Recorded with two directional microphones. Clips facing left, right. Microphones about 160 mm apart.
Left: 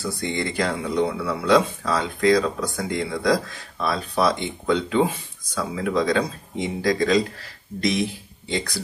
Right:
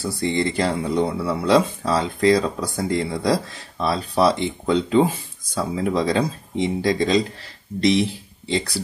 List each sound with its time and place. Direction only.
0.0 s speech: 30° right (ahead or behind)